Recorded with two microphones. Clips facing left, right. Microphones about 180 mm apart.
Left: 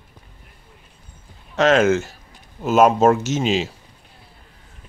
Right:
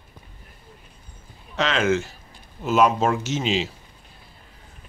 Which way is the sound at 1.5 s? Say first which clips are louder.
Left 6 dB; 45° left (ahead or behind).